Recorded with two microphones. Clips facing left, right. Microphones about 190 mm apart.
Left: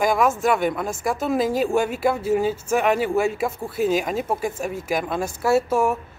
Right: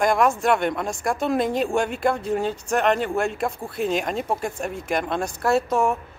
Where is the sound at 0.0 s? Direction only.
5° left (ahead or behind).